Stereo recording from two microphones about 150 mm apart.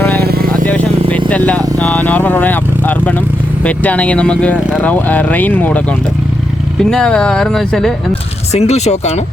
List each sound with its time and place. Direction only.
0.2 s vehicle: 90° right
1.3 s speech: 10° left (ahead or behind)
8.5 s speech: 45° left (ahead or behind)